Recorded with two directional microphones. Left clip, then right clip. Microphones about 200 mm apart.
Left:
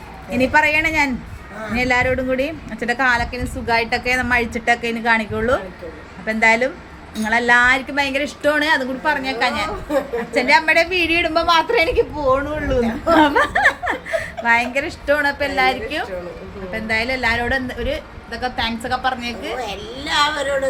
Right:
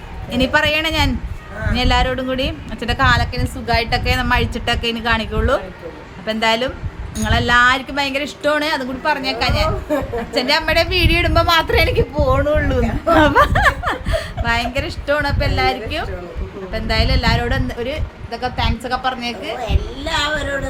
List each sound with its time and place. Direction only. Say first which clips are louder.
0.3 s a woman's voice: even; 5° right (ahead or behind)
19.6 s a woman's voice: right 1 dB; 10° right (ahead or behind)